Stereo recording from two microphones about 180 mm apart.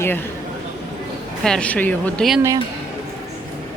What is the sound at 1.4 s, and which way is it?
Speech, 5° left (ahead or behind).